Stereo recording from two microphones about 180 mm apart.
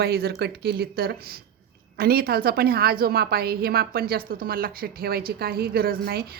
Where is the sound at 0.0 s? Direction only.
60° right (ahead or behind).